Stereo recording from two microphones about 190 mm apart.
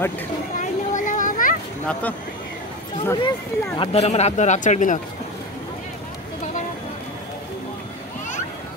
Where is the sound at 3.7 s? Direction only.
35° left (ahead or behind).